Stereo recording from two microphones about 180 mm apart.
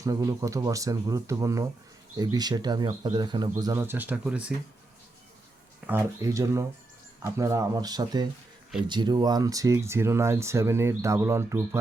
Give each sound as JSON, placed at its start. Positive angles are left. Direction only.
{"t": 0.0, "sound": "speech", "side_deg": -20}
{"t": 5.8, "sound": "speech", "side_deg": -10}